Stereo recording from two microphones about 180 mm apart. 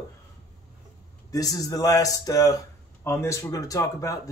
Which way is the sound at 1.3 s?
20° left (ahead or behind).